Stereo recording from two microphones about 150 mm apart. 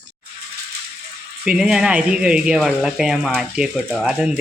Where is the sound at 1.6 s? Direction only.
5° right (ahead or behind).